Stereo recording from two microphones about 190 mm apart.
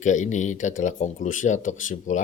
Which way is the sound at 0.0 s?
40° left (ahead or behind).